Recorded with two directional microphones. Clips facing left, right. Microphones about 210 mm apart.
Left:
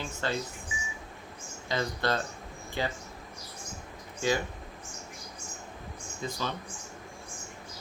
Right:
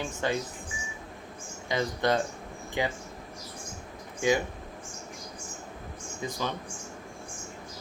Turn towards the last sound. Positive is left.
turn(degrees=-15)  # may be behind; listen again after turning